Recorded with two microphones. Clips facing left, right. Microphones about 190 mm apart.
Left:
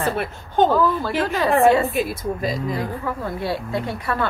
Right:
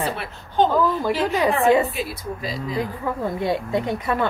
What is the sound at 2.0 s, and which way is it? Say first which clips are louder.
Speech: left 5 dB; 50° left (ahead or behind).